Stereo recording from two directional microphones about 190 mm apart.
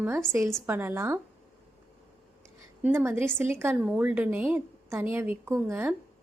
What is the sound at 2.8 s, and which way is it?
A woman's voice, 10° right (ahead or behind).